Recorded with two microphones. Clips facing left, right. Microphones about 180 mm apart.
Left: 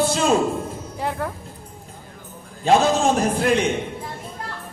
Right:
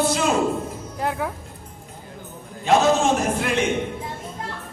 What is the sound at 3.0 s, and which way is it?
Music, 35° left (ahead or behind).